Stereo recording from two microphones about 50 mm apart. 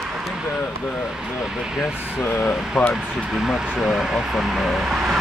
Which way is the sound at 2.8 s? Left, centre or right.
Centre.